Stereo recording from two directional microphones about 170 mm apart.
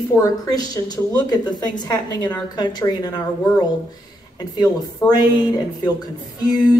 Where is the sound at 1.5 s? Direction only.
25° left (ahead or behind).